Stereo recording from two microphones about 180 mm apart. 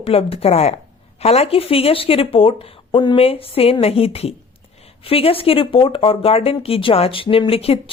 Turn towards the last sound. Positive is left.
turn(degrees=35)  # may be behind; listen again after turning